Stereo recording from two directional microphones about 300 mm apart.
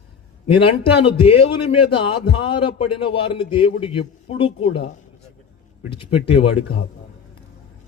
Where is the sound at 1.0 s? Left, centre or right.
Centre.